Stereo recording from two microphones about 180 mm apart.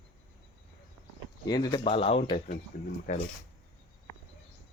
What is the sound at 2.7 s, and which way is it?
Speech, 50° left (ahead or behind).